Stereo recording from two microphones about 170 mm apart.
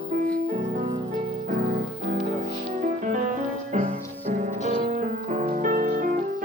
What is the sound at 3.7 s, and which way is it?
Music, 50° right (ahead or behind).